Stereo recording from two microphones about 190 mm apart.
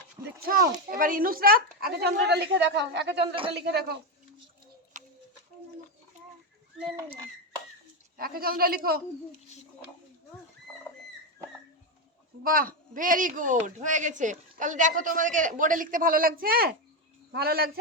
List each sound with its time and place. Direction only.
0.4 s a woman's voice: 50° right (ahead or behind)
4.9 s a sound: 40° right (ahead or behind)
8.1 s speech: 50° right (ahead or behind)
12.4 s speech: 50° right (ahead or behind)